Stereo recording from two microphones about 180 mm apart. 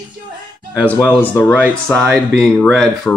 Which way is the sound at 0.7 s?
10° left (ahead or behind).